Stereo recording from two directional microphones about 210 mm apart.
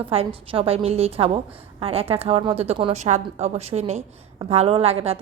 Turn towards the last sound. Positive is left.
turn(degrees=-30)  # may be behind; listen again after turning